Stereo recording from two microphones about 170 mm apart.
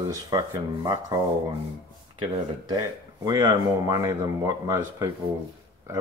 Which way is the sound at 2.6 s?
20° right (ahead or behind).